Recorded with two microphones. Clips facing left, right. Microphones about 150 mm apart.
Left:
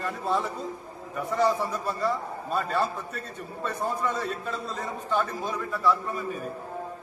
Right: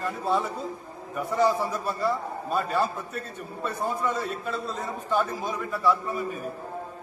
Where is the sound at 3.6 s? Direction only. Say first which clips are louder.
Right 1 dB; 5° right (ahead or behind).